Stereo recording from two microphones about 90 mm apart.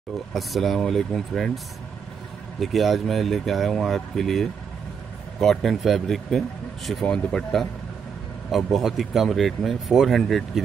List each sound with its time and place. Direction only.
0.3 s speech: centre (ahead or behind)
2.6 s speech: centre (ahead or behind)
7.2 s speech: 15° left (ahead or behind)
8.5 s speech: centre (ahead or behind)